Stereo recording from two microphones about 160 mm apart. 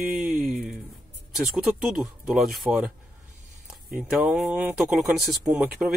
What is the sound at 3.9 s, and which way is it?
Speech, 5° right (ahead or behind).